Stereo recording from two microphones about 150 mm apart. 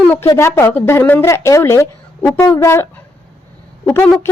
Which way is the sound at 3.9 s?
10° left (ahead or behind).